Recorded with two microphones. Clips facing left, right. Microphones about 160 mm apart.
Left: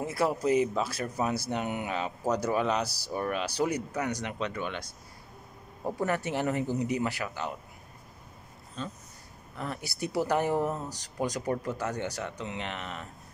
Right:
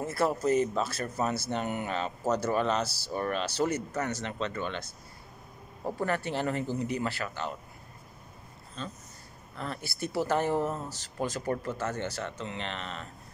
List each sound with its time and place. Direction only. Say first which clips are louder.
0.0 s speech: even; 15° left (ahead or behind)
6.0 s speech: left 1 dB; 15° left (ahead or behind)
8.8 s speech: left 2 dB; 15° left (ahead or behind)